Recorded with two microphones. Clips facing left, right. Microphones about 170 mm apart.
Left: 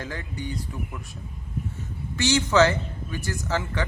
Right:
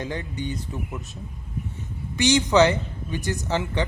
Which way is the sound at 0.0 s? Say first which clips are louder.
Right 4 dB; 20° right (ahead or behind).